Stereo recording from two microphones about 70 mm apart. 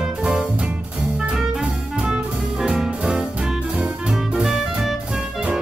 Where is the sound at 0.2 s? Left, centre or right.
Centre.